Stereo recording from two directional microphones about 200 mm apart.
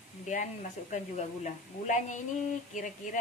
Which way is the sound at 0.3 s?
40° left (ahead or behind).